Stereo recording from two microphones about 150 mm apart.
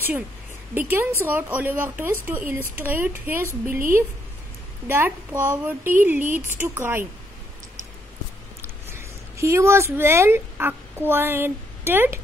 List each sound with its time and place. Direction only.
0.7 s speech: 15° right (ahead or behind)
8.9 s speech: 20° right (ahead or behind)